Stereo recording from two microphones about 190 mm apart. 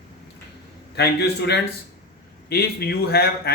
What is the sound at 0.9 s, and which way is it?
A man's voice, 60° left (ahead or behind).